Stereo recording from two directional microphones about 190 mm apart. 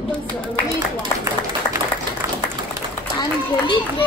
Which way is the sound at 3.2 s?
25° left (ahead or behind).